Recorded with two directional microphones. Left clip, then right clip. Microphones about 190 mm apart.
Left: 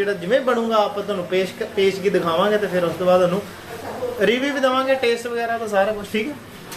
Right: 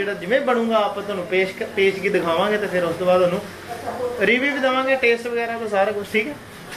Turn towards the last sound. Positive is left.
turn(degrees=15)  # may be behind; listen again after turning